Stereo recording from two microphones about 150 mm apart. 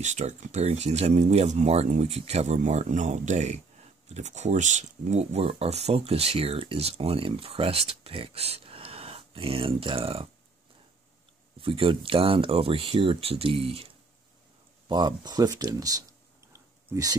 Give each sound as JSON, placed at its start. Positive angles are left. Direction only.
{"t": 0.0, "sound": "speech", "side_deg": -50}
{"t": 11.5, "sound": "speech", "side_deg": -35}
{"t": 14.9, "sound": "speech", "side_deg": -30}
{"t": 16.5, "sound": "a sound", "side_deg": -20}